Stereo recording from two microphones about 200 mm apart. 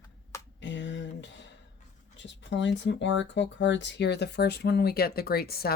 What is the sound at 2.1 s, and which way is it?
Speech, 65° left (ahead or behind).